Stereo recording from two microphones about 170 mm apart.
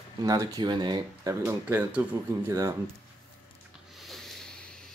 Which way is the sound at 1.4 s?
10° right (ahead or behind).